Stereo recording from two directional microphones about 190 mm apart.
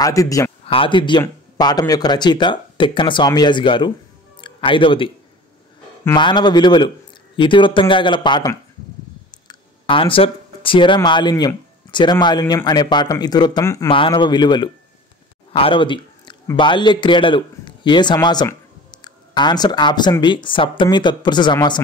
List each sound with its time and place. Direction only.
0.0 s a man's voice: 20° left (ahead or behind)
6.1 s a man's voice: 25° left (ahead or behind)
15.5 s a sound: 30° left (ahead or behind)
16.4 s a man's voice: 25° left (ahead or behind)